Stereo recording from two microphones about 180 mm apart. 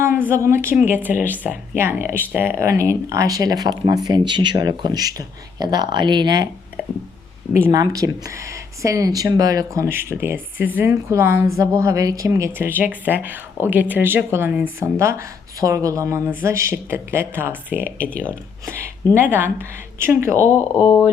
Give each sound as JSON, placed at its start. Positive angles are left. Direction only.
{"t": 0.0, "sound": "a woman's voice", "side_deg": -15}
{"t": 7.5, "sound": "a woman's voice", "side_deg": -20}
{"t": 19.3, "sound": "a woman's voice", "side_deg": -10}
{"t": 20.4, "sound": "speech", "side_deg": 10}